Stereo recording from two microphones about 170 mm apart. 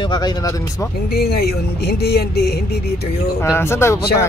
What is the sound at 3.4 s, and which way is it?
Speech, 15° left (ahead or behind).